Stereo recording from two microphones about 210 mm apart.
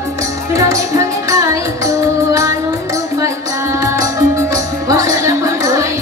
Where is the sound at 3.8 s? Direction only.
15° right (ahead or behind).